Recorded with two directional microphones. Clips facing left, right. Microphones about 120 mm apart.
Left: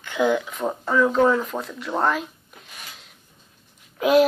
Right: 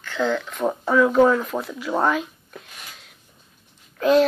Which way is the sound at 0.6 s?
5° right (ahead or behind).